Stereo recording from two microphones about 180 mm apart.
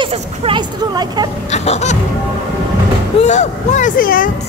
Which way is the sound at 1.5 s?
35° left (ahead or behind).